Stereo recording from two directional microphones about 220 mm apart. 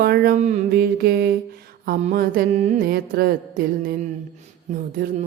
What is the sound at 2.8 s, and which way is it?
Mantra, 45° right (ahead or behind).